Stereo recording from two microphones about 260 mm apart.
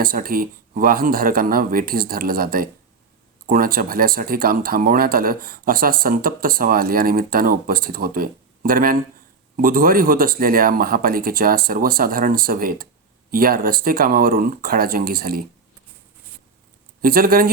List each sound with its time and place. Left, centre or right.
0.0 s speech: right
17.0 s speech: right